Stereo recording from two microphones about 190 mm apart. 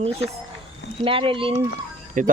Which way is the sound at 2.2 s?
40° right (ahead or behind).